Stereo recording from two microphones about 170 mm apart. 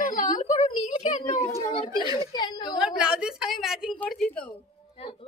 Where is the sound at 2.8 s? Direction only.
5° right (ahead or behind).